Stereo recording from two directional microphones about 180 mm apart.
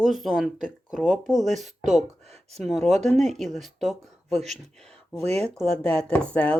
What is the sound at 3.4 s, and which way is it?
Speech, centre (ahead or behind).